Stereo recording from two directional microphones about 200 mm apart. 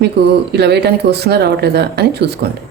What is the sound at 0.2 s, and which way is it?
Speech, 55° right (ahead or behind).